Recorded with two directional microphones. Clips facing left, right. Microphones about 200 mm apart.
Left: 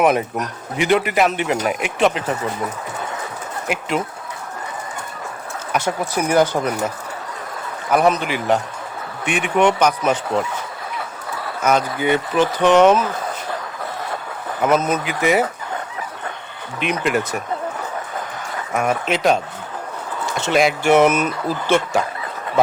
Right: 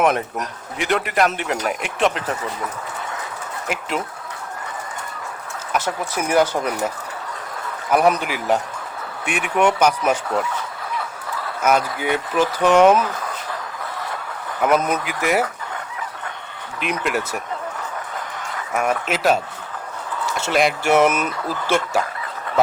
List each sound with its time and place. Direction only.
0.0 s speech: centre (ahead or behind)
3.7 s speech: centre (ahead or behind)
5.7 s speech: 5° right (ahead or behind)
7.9 s speech: 5° right (ahead or behind)
11.6 s speech: 5° right (ahead or behind)
14.6 s speech: 10° right (ahead or behind)
16.8 s speech: 5° right (ahead or behind)
18.7 s speech: 5° right (ahead or behind)